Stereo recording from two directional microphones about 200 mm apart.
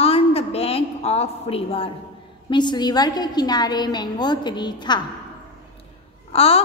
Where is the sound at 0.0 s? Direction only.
30° left (ahead or behind).